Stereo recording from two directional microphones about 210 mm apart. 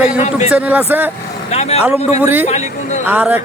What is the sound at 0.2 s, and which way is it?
Speech, 30° left (ahead or behind).